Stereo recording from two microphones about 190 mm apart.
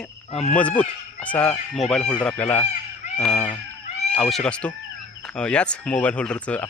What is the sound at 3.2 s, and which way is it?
Fowl, 5° left (ahead or behind).